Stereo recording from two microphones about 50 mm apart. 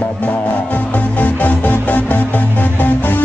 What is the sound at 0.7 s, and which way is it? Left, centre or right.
Music, left.